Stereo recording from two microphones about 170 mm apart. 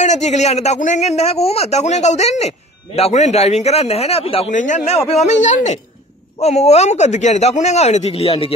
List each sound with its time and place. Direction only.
0.0 s a man's voice: 40° left (ahead or behind)